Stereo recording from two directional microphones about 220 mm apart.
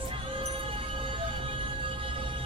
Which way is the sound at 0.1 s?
25° right (ahead or behind).